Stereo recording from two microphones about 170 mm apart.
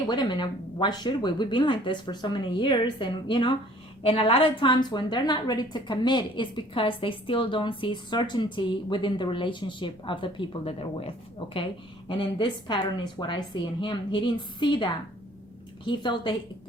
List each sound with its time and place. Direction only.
0.1 s a woman's voice: 25° left (ahead or behind)
15.9 s a woman's voice: 25° left (ahead or behind)